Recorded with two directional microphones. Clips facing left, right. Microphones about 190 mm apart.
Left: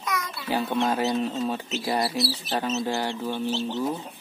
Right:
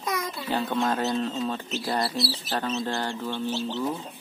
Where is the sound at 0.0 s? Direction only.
35° right (ahead or behind).